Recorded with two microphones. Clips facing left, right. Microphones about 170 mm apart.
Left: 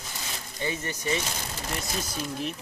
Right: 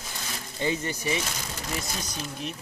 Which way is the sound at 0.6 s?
20° right (ahead or behind).